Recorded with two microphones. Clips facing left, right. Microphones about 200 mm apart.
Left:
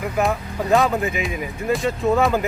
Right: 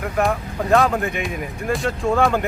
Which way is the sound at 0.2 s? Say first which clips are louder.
Right 1 dB; centre (ahead or behind).